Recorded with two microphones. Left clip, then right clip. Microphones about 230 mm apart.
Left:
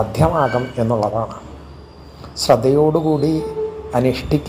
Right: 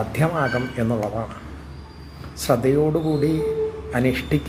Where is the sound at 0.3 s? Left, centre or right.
Centre.